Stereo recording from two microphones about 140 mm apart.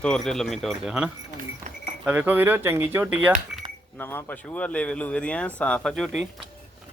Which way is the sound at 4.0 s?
15° left (ahead or behind).